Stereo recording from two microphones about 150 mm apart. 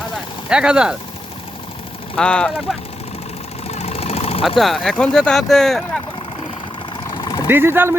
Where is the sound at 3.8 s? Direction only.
45° left (ahead or behind).